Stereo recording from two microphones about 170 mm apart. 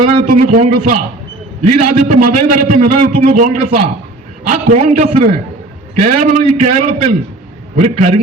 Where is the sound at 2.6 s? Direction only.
50° right (ahead or behind).